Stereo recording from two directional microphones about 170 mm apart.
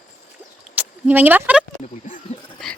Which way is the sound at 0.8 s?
10° right (ahead or behind).